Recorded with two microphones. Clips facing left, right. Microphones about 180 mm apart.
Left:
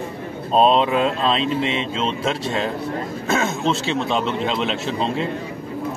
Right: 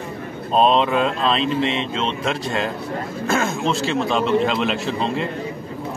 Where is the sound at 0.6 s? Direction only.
Centre (ahead or behind).